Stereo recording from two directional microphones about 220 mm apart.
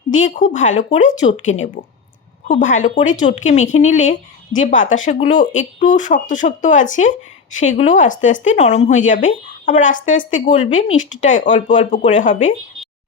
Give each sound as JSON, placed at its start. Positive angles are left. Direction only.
{"t": 0.1, "sound": "speech", "side_deg": 35}